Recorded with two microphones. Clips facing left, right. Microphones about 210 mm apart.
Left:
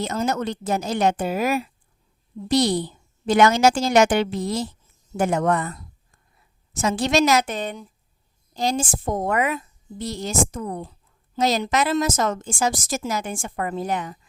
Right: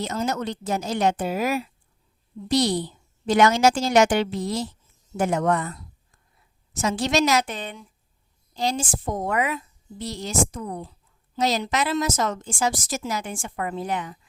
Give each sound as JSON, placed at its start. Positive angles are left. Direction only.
{"t": 0.0, "sound": "a woman's voice", "side_deg": 55}